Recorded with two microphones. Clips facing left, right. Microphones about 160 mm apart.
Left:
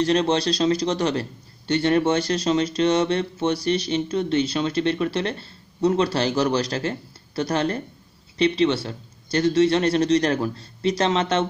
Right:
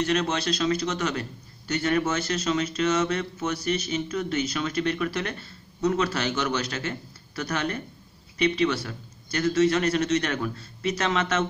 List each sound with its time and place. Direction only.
0.0 s speech: 30° left (ahead or behind)